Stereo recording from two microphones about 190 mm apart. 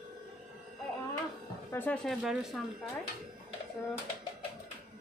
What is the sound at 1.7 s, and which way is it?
Speech, 10° left (ahead or behind).